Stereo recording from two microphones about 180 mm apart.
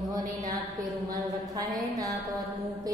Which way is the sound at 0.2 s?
45° right (ahead or behind).